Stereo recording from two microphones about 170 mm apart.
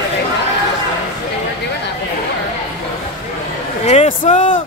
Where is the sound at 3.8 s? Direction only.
40° left (ahead or behind).